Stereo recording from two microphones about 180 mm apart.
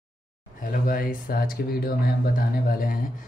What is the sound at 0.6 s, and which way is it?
Speech, 50° left (ahead or behind).